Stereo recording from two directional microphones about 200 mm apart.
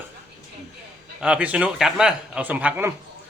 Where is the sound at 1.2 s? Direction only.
5° right (ahead or behind).